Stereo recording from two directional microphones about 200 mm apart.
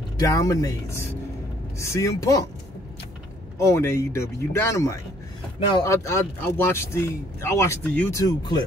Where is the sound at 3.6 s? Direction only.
15° left (ahead or behind).